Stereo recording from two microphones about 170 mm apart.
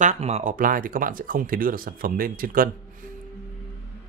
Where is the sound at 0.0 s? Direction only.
40° right (ahead or behind); by 3.1 s 55° right (ahead or behind).